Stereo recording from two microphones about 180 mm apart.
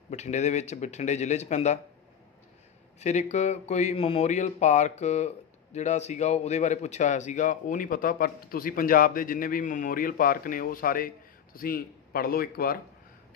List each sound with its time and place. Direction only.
0.1 s speech: 40° left (ahead or behind)
3.0 s speech: 40° left (ahead or behind); by 12.7 s 55° left (ahead or behind)